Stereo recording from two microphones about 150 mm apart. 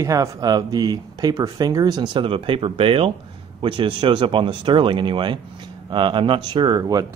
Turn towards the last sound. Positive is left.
turn(degrees=-25)  # may be behind; listen again after turning